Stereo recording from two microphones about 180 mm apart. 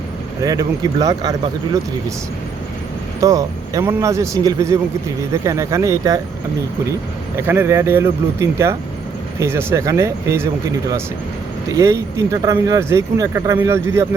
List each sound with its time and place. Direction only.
0.4 s speech: 20° right (ahead or behind)
3.2 s speech: 20° right (ahead or behind)
7.3 s speech: 15° right (ahead or behind)